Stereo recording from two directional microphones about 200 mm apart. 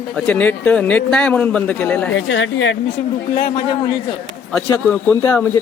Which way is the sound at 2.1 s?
70° left (ahead or behind).